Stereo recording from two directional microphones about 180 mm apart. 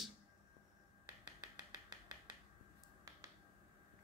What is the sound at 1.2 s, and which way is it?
Finger snapping, 25° right (ahead or behind).